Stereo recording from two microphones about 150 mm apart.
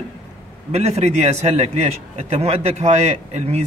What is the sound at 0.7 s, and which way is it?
A man's voice, 45° right (ahead or behind).